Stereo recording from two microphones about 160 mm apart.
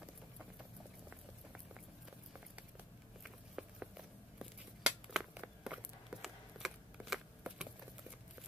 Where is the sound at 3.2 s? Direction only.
5° right (ahead or behind).